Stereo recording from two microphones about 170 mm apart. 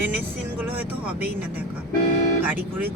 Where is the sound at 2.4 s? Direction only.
10° right (ahead or behind).